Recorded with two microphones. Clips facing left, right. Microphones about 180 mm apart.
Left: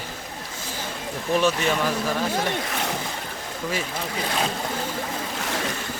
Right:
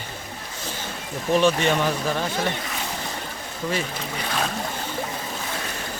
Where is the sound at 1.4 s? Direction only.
5° left (ahead or behind).